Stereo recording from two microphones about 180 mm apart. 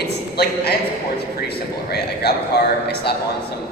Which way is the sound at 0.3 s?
65° left (ahead or behind).